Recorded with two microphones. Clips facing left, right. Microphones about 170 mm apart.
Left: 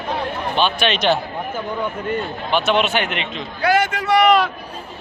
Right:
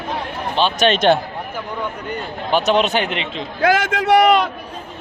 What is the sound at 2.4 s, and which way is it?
Speech, 40° right (ahead or behind).